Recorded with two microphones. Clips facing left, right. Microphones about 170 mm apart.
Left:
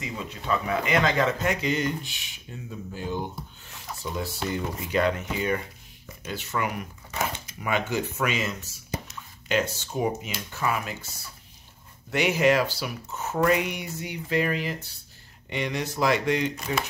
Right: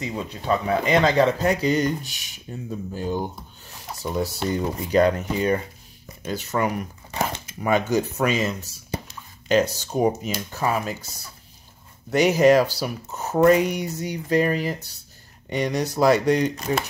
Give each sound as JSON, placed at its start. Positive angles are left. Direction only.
{"t": 0.0, "sound": "speech", "side_deg": -35}